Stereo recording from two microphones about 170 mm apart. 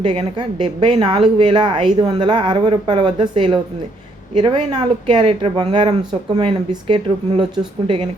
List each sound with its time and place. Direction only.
0.0 s speech: 30° right (ahead or behind)